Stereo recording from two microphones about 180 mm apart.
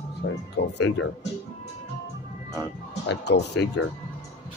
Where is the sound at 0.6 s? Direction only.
70° left (ahead or behind).